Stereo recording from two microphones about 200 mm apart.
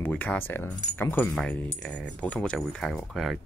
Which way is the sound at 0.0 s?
10° left (ahead or behind).